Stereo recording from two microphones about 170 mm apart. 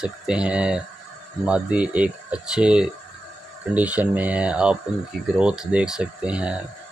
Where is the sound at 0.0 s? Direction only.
5° right (ahead or behind).